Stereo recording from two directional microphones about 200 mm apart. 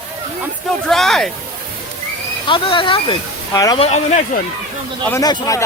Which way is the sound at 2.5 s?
25° left (ahead or behind).